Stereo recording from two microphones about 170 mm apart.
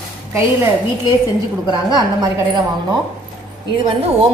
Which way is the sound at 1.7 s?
25° right (ahead or behind).